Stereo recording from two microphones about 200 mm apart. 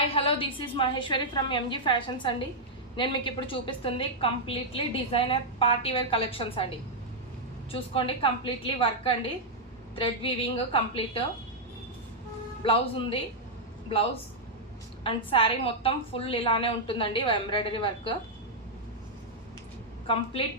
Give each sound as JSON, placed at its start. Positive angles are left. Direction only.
{"t": 0.1, "sound": "a woman's voice", "side_deg": 25}
{"t": 7.7, "sound": "a woman's voice", "side_deg": 25}
{"t": 12.6, "sound": "a woman's voice", "side_deg": 25}
{"t": 15.0, "sound": "a woman's voice", "side_deg": 25}